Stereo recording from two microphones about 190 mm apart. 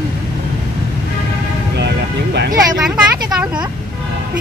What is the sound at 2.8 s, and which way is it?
Vehicle, 5° right (ahead or behind).